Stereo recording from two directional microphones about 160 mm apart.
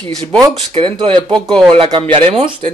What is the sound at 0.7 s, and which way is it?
Speech, 35° right (ahead or behind).